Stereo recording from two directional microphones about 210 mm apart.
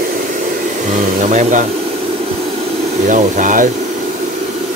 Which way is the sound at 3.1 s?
40° right (ahead or behind).